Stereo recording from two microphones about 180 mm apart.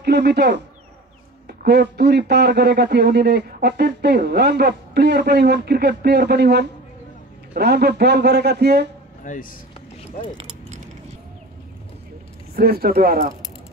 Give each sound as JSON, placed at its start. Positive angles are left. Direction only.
{"t": 0.0, "sound": "a man's voice", "side_deg": -65}
{"t": 9.2, "sound": "speech", "side_deg": 50}
{"t": 12.5, "sound": "a man's voice", "side_deg": -60}